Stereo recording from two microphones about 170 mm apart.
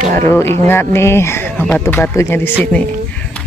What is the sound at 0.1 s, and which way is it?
Speech, 15° left (ahead or behind).